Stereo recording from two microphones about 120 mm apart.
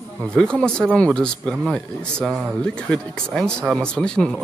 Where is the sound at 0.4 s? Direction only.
5° left (ahead or behind).